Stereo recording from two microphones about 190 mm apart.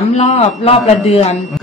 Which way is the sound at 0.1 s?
35° left (ahead or behind).